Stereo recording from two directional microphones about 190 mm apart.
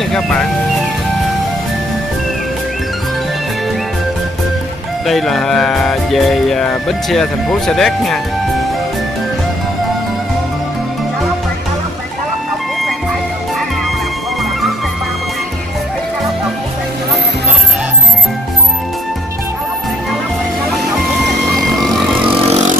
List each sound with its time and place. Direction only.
0.1 s music: 5° left (ahead or behind)
5.0 s music: centre (ahead or behind)
21.7 s vehicle: centre (ahead or behind)
22.3 s vehicle: 30° right (ahead or behind)